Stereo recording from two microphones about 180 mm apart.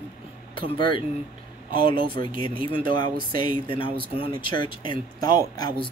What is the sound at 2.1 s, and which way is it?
Speech, 25° left (ahead or behind).